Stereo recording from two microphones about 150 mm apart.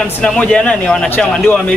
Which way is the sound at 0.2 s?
5° left (ahead or behind).